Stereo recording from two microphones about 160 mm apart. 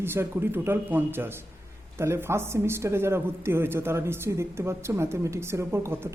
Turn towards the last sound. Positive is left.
turn(degrees=-15)  # may be behind; listen again after turning